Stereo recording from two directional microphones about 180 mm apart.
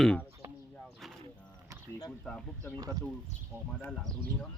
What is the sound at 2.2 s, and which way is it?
Speech, 5° left (ahead or behind).